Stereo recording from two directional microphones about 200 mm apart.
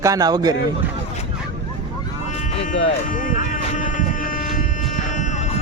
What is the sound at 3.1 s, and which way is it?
Music, 40° left (ahead or behind).